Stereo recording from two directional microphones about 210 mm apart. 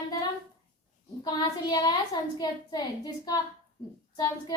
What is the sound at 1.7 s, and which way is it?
A woman's voice, 20° left (ahead or behind).